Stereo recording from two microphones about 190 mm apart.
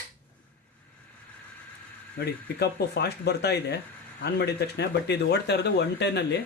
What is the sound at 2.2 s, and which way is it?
Speech, 60° left (ahead or behind).